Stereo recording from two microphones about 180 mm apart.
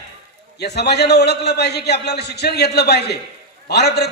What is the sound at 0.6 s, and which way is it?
A man's voice, 65° left (ahead or behind).